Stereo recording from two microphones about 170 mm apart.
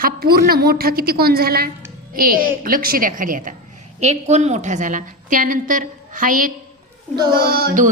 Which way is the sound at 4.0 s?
40° right (ahead or behind).